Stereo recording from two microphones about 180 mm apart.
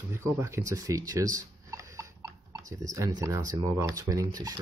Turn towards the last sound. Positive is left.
turn(degrees=-20)  # may be behind; listen again after turning